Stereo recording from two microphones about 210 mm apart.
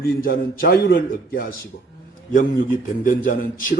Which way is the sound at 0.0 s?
45° left (ahead or behind).